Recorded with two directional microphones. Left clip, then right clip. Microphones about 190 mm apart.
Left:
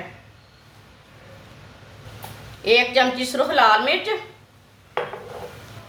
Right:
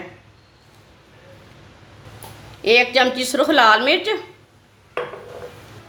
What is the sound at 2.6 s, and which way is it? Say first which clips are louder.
A woman's voice: right 2 dB; 50° right (ahead or behind).